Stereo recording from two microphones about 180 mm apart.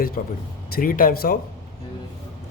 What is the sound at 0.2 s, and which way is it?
A man's voice, 45° left (ahead or behind).